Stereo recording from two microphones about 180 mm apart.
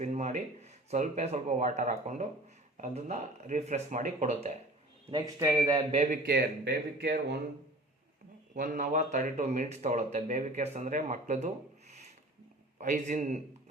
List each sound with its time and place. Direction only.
0.0 s speech: 40° right (ahead or behind)
5.1 s a man's voice: 20° right (ahead or behind)
5.9 s speech: 40° right (ahead or behind)
6.2 s speech: 65° right (ahead or behind)
8.5 s a man's voice: 45° right (ahead or behind)